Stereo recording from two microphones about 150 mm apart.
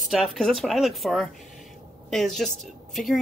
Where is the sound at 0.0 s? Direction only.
Centre (ahead or behind).